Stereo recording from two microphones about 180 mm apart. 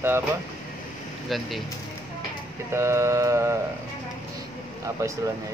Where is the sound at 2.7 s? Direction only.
15° right (ahead or behind).